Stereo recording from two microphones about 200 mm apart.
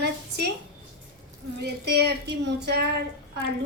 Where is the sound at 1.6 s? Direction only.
55° right (ahead or behind).